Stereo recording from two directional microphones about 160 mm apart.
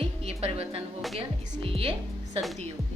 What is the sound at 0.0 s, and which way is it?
Music, 40° right (ahead or behind).